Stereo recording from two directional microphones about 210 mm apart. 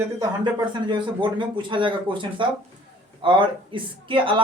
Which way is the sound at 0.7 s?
20° right (ahead or behind).